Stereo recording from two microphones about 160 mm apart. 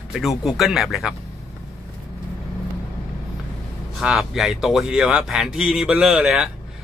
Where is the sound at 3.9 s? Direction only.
Centre (ahead or behind).